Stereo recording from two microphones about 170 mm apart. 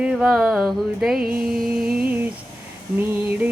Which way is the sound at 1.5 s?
Centre (ahead or behind).